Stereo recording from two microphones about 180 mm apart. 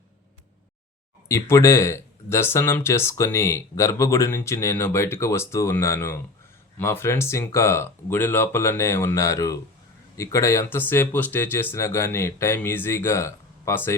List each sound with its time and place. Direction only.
1.3 s speech: 15° left (ahead or behind)